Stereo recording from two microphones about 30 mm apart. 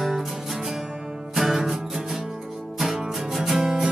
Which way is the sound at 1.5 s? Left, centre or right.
Centre.